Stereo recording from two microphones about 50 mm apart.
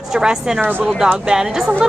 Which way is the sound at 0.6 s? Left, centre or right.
Right.